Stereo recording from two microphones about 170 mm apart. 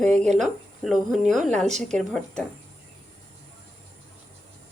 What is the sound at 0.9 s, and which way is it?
Speech, centre (ahead or behind).